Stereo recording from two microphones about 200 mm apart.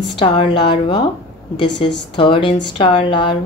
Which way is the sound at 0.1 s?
25° left (ahead or behind).